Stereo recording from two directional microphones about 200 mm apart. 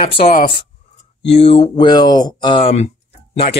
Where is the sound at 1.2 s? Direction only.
30° left (ahead or behind).